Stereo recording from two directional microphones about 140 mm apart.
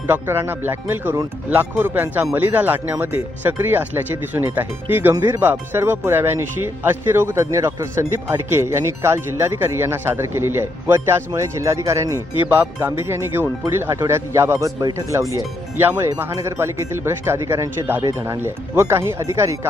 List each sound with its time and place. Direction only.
0.1 s speech: 15° right (ahead or behind)